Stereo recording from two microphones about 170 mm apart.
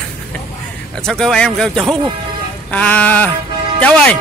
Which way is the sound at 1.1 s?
Centre (ahead or behind).